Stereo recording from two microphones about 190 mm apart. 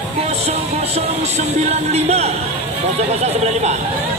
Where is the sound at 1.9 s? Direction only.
35° right (ahead or behind).